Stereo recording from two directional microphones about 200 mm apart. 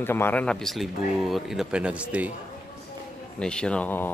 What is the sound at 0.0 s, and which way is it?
Speech, 10° left (ahead or behind).